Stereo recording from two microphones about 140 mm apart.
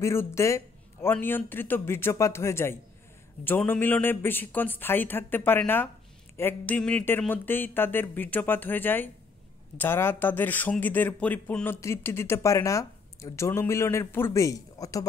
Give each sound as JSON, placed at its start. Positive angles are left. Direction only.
{"t": 0.0, "sound": "speech", "side_deg": 20}